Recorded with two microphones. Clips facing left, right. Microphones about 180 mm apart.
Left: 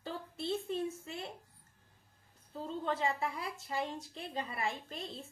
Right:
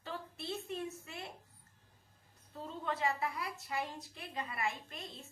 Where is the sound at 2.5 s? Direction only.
30° left (ahead or behind).